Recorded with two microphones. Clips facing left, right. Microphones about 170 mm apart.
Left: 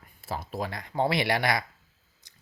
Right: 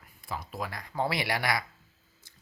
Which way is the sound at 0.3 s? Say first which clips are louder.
Left 4 dB; 25° left (ahead or behind).